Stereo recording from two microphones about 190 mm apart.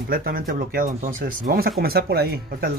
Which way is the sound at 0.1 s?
50° right (ahead or behind).